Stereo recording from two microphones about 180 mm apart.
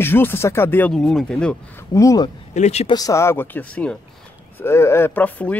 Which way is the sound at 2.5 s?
40° left (ahead or behind).